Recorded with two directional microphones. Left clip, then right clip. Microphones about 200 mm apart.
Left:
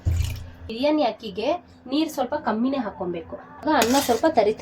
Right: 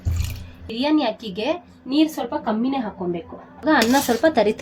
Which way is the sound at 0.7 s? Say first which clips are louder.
Right 1 dB; 50° right (ahead or behind).